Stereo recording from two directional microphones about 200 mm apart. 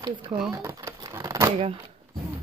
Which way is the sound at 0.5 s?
20° right (ahead or behind).